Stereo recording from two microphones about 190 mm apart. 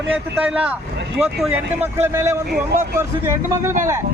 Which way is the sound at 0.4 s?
5° right (ahead or behind).